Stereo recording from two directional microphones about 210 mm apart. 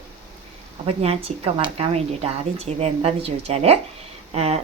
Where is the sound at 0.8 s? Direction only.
30° right (ahead or behind).